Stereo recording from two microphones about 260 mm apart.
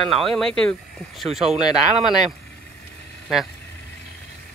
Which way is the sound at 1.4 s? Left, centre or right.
Right.